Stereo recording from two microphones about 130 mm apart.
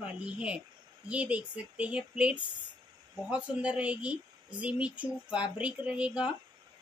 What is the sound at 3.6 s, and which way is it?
A woman's voice, 10° right (ahead or behind).